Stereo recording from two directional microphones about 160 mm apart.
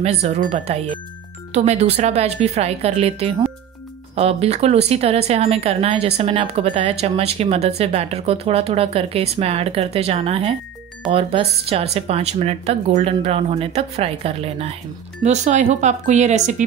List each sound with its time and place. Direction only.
0.0 s a woman's voice: 40° right (ahead or behind)